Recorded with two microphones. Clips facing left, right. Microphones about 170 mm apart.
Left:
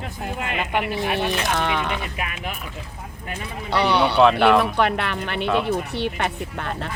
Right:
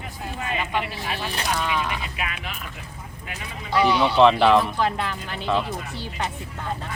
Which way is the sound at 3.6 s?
70° left (ahead or behind).